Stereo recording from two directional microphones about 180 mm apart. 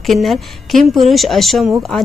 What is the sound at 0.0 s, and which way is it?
Speech, centre (ahead or behind).